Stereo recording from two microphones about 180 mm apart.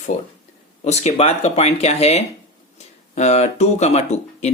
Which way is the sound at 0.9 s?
35° left (ahead or behind).